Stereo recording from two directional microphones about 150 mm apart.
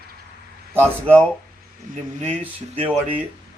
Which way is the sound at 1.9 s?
65° right (ahead or behind).